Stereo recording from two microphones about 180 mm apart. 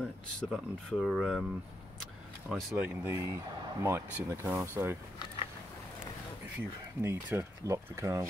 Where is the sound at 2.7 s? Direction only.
15° right (ahead or behind).